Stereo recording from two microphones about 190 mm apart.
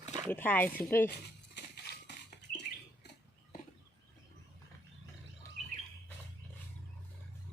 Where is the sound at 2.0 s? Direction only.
65° left (ahead or behind).